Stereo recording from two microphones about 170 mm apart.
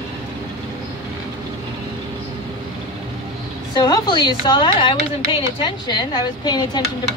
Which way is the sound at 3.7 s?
25° left (ahead or behind).